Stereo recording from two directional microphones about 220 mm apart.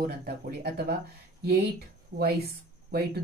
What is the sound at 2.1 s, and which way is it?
Speech, 35° right (ahead or behind).